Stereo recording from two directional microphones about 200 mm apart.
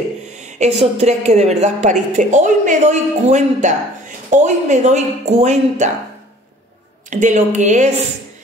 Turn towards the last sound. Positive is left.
turn(degrees=-35)  # may be behind; listen again after turning